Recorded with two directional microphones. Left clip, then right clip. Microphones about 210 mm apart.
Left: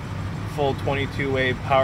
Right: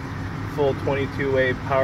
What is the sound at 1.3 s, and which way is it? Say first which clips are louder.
Speech: even; 10° left (ahead or behind).